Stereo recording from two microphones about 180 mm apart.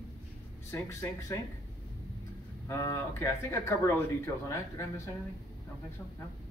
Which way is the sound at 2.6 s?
15° left (ahead or behind).